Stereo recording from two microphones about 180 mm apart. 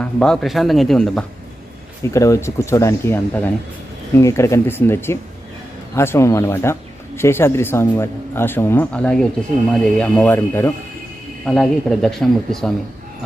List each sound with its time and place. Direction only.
0.0 s speech: 5° left (ahead or behind)
2.0 s speech: 15° left (ahead or behind)